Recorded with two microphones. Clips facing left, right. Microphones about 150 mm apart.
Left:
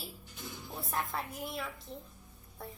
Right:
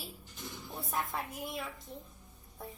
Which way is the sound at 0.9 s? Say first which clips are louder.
Even; 10° right (ahead or behind).